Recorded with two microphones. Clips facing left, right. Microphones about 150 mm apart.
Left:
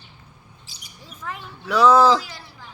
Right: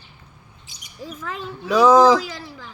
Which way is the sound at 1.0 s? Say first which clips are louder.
Right 4 dB; 90° right.